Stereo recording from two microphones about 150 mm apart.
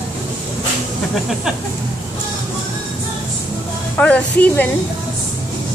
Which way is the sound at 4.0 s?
10° left (ahead or behind).